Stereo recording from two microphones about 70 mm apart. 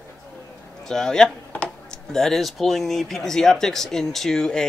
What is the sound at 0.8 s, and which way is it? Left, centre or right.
Speech, centre.